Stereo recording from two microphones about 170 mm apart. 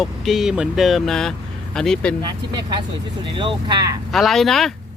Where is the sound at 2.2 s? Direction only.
25° right (ahead or behind).